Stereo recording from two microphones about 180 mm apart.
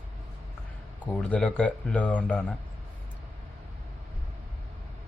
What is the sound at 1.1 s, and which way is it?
Speech, 10° left (ahead or behind).